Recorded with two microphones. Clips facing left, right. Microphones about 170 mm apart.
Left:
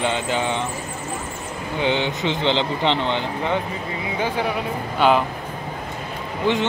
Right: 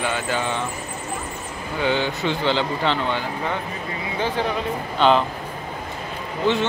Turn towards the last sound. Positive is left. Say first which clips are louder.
# even
turn(degrees=15)  # may be behind; listen again after turning